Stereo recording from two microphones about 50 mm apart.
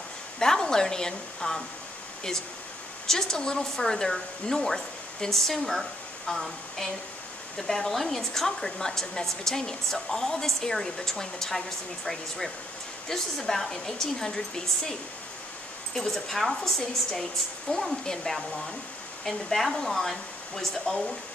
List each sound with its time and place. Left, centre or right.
0.4 s a woman's voice: centre
3.1 s a woman's voice: centre